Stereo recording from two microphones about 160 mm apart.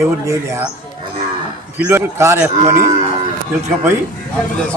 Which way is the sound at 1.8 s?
15° right (ahead or behind).